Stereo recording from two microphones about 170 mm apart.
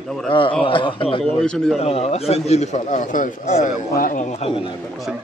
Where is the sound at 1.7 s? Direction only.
40° left (ahead or behind).